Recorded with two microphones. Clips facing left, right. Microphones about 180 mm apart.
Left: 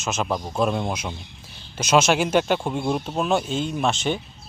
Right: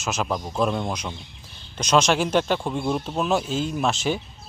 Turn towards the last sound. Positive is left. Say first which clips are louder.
# even
turn(degrees=0)  # may be behind; listen again after turning